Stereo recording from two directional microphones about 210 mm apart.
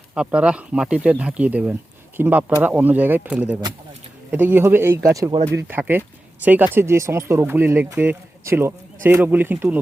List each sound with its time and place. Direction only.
0.1 s speech: 5° right (ahead or behind)
5.5 s speech: 10° right (ahead or behind)